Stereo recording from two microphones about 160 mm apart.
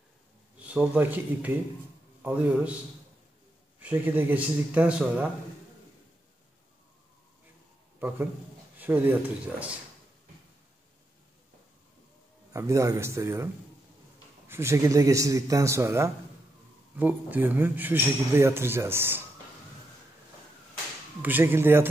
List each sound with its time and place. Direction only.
0.6 s a man's voice: 10° right (ahead or behind)
3.8 s a man's voice: 10° right (ahead or behind)
8.7 s a man's voice: 10° right (ahead or behind)
12.5 s a man's voice: 20° right (ahead or behind)
14.5 s a man's voice: 15° right (ahead or behind)
21.2 s a man's voice: 10° right (ahead or behind)